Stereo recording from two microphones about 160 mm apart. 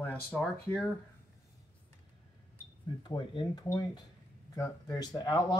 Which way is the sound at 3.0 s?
25° left (ahead or behind).